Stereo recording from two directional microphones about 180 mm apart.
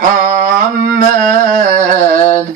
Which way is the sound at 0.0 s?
50° right (ahead or behind).